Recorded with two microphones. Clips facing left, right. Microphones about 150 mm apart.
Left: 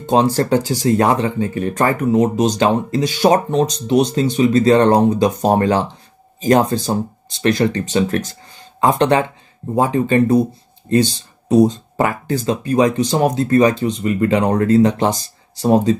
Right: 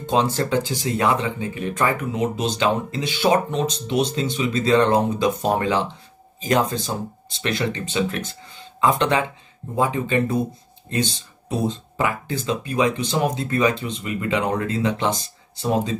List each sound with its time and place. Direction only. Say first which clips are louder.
0.0 s speech: left 6 dB; 40° left (ahead or behind)